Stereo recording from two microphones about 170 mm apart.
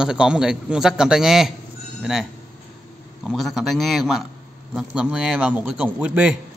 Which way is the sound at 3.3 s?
Centre (ahead or behind).